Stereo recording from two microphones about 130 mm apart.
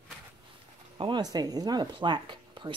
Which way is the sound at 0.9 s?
40° right (ahead or behind).